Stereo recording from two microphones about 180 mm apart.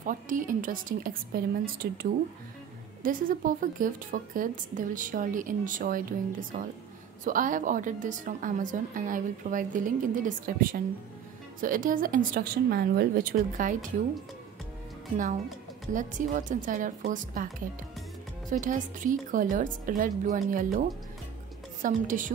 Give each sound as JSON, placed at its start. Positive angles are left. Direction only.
{"t": 0.0, "sound": "a woman's voice", "side_deg": -50}
{"t": 7.2, "sound": "a woman's voice", "side_deg": -45}
{"t": 15.9, "sound": "a woman's voice", "side_deg": -45}
{"t": 21.8, "sound": "a woman's voice", "side_deg": -45}